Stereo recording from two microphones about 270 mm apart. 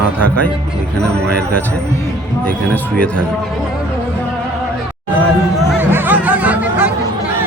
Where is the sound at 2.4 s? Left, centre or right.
Centre.